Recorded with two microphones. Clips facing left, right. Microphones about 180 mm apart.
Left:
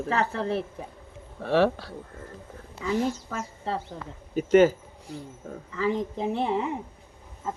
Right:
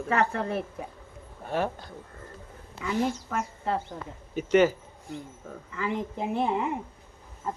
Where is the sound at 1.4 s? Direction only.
90° left.